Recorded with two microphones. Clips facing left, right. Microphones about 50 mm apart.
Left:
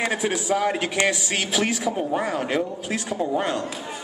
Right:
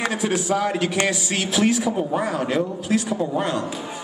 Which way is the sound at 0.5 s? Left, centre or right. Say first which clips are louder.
Right 1 dB; centre.